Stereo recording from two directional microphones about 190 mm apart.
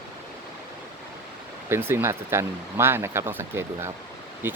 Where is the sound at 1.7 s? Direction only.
10° right (ahead or behind).